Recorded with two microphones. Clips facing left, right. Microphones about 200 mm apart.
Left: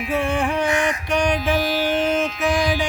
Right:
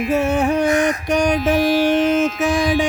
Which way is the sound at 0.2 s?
40° right (ahead or behind).